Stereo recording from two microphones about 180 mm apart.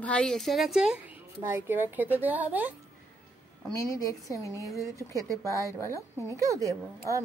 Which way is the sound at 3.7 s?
15° left (ahead or behind).